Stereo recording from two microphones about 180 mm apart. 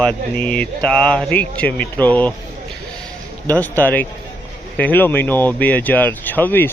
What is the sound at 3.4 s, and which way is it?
A man's voice, 10° left (ahead or behind).